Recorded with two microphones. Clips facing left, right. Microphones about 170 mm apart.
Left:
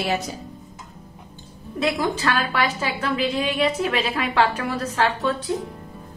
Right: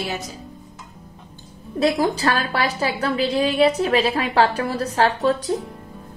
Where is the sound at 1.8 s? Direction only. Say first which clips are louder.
Right 4 dB; 35° right (ahead or behind).